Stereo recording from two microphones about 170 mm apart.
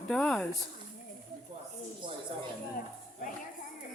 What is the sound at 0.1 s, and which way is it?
Speech, 5° left (ahead or behind).